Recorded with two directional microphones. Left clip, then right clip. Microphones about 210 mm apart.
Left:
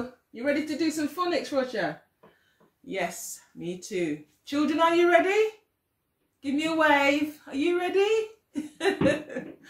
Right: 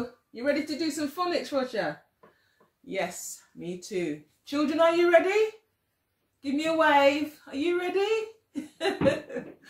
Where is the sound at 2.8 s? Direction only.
5° left (ahead or behind).